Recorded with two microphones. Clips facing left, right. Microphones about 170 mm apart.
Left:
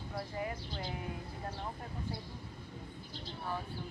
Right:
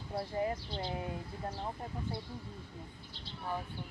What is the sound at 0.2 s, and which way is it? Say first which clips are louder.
Speech: right 5 dB; 30° right (ahead or behind).